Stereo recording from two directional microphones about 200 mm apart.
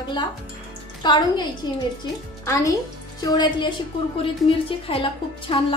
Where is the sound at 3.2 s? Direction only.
20° left (ahead or behind).